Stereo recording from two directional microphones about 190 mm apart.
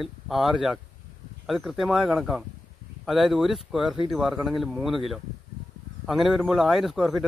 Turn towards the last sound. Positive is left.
turn(degrees=0)  # may be behind; listen again after turning